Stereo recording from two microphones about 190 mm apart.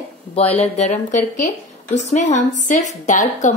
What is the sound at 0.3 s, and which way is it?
Speech, 30° left (ahead or behind).